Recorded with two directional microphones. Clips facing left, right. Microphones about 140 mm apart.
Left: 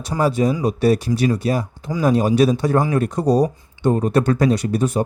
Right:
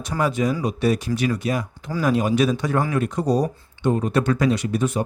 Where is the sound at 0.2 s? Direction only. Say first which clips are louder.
Left 4 dB; 35° left (ahead or behind).